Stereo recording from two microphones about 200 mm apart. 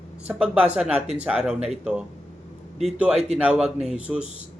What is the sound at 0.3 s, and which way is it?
Speech, 5° right (ahead or behind).